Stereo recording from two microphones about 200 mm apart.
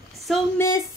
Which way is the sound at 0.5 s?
15° left (ahead or behind).